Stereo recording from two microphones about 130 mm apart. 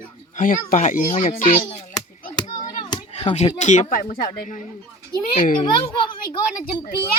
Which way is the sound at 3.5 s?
65° left (ahead or behind).